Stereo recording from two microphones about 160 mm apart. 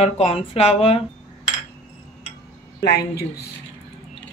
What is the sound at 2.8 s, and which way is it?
Speech, 85° left.